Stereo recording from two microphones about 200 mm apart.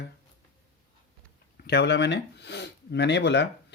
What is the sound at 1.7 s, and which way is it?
Speech, 55° left (ahead or behind).